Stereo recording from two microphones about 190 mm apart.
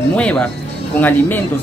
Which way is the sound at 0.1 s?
5° left (ahead or behind).